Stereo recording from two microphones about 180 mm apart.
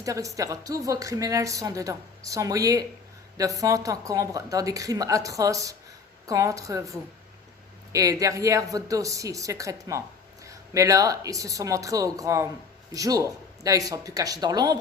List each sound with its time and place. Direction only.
0.0 s a woman's voice: 20° right (ahead or behind)